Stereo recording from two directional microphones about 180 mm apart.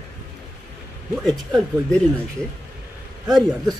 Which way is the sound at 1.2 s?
20° right (ahead or behind).